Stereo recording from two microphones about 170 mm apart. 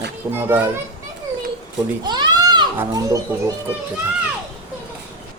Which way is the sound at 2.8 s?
20° right (ahead or behind).